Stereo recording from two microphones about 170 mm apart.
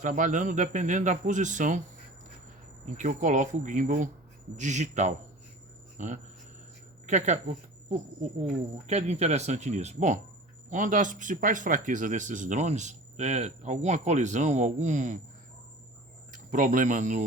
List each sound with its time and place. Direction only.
0.0 s speech: 50° right (ahead or behind)
3.0 s speech: 45° right (ahead or behind)
16.3 s speech: 50° right (ahead or behind)